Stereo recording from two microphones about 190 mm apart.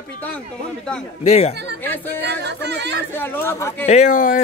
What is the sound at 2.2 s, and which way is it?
Speech, 65° right (ahead or behind).